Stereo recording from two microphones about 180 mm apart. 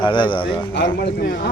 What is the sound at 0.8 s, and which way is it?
Speech, 65° left (ahead or behind).